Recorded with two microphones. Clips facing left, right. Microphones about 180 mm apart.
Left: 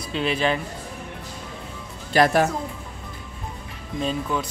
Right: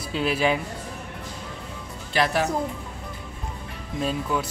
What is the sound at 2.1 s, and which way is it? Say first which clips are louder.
Speech: left 5 dB; 45° left (ahead or behind).